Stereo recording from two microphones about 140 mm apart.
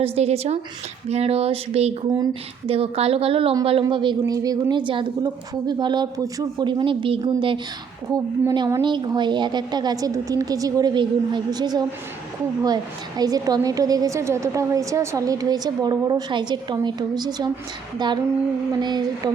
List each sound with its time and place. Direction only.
0.0 s a woman's voice: 45° right (ahead or behind)
4.2 s a woman's voice: 20° right (ahead or behind)